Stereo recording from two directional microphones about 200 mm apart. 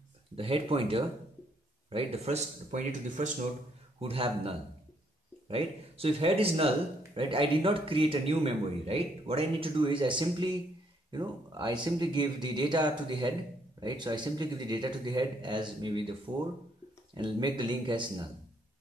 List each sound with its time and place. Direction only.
0.4 s speech: 25° right (ahead or behind)
4.0 s speech: 30° right (ahead or behind)